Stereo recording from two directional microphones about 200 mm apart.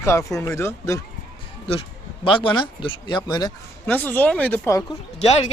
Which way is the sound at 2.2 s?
25° left (ahead or behind).